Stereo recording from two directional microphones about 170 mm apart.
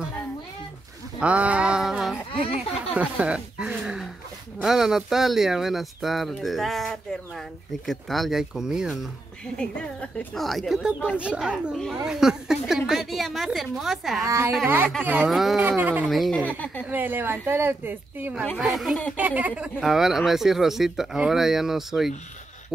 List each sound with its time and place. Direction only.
1.2 s a sound: 5° right (ahead or behind)
2.3 s speech: 35° left (ahead or behind)
2.7 s a sound: 5° right (ahead or behind)
4.6 s speech: 5° right (ahead or behind)
14.2 s a woman's voice: 15° right (ahead or behind)
15.0 s speech: 5° right (ahead or behind)
16.9 s a woman's voice: 10° right (ahead or behind)
18.4 s speech: centre (ahead or behind)